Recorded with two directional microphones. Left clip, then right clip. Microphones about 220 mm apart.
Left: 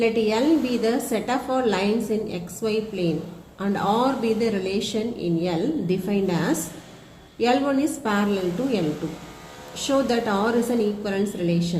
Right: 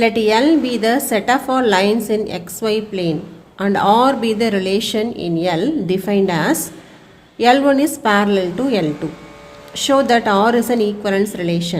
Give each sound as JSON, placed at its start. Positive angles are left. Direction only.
{"t": 0.0, "sound": "a woman's voice", "side_deg": -50}